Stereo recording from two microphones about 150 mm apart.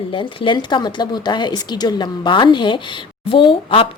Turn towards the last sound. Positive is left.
turn(degrees=35)  # may be behind; listen again after turning